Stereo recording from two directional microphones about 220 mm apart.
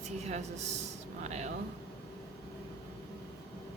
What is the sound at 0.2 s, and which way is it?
Speech, 30° right (ahead or behind).